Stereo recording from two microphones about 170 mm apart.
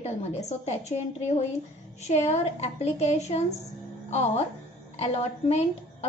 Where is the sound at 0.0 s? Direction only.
40° left (ahead or behind).